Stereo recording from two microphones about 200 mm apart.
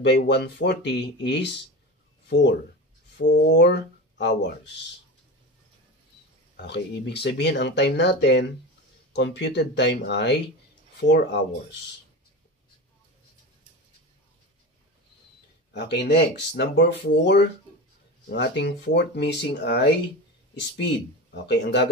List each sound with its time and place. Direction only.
0.0 s speech: 55° left (ahead or behind)
3.2 s speech: 60° left (ahead or behind)
6.5 s speech: 55° left (ahead or behind)
15.7 s speech: 55° left (ahead or behind)